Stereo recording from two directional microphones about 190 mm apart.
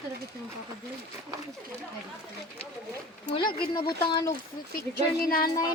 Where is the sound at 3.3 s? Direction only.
25° left (ahead or behind).